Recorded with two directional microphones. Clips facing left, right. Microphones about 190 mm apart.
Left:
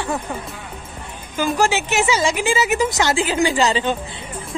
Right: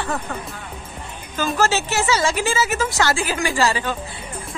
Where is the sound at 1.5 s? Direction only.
15° left (ahead or behind).